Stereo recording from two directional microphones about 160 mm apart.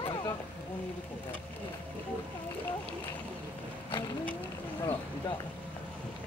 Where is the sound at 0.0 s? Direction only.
25° left (ahead or behind).